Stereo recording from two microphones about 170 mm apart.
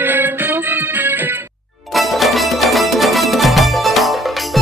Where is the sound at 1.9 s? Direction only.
Centre (ahead or behind).